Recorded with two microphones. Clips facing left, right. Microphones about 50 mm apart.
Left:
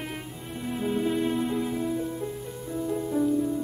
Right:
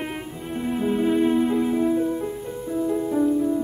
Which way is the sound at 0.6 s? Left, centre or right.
Centre.